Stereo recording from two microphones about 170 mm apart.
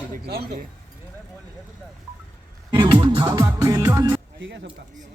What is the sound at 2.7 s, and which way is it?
Music, 25° right (ahead or behind).